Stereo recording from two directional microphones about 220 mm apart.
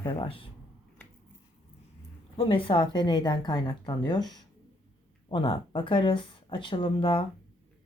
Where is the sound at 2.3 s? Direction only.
25° left (ahead or behind).